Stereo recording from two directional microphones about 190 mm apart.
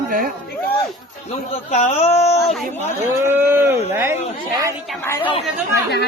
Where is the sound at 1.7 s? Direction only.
35° left (ahead or behind).